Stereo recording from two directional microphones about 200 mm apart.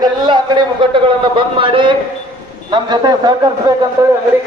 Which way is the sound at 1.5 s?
25° right (ahead or behind).